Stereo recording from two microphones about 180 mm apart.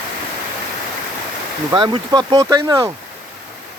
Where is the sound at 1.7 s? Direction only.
25° right (ahead or behind).